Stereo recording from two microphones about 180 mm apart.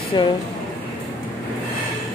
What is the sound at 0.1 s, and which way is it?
Speech, 25° left (ahead or behind).